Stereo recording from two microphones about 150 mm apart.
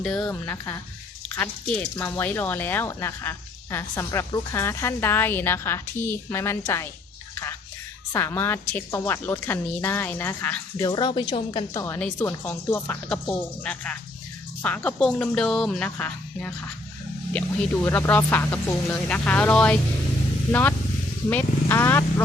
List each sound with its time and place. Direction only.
0.0 s speech: 5° left (ahead or behind)
0.4 s speech: 15° left (ahead or behind)
8.1 s speech: 15° left (ahead or behind)
10.8 s a woman's voice: 30° left (ahead or behind)
11.7 s speech: 20° left (ahead or behind)
11.9 s speech: 10° left (ahead or behind)
17.8 s speech: 15° left (ahead or behind)